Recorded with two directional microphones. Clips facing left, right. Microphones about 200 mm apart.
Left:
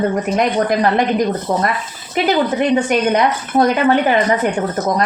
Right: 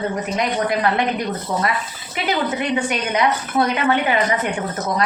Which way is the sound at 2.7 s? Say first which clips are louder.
Left 7 dB; 45° left (ahead or behind).